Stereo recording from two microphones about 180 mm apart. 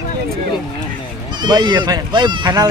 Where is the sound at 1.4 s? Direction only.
25° right (ahead or behind).